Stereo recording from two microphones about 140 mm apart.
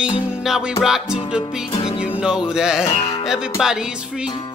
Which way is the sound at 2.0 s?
5° right (ahead or behind).